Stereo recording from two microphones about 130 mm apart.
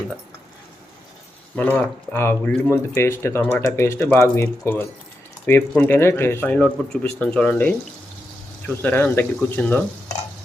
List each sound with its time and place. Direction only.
1.5 s speech: 10° left (ahead or behind)